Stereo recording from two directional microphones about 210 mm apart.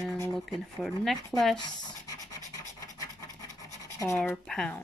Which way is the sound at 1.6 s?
20° left (ahead or behind).